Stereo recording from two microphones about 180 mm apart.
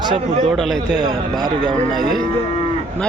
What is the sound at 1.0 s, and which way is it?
Speech, 20° right (ahead or behind).